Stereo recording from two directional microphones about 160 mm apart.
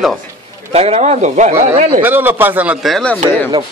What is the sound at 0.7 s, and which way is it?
Speech, 40° right (ahead or behind).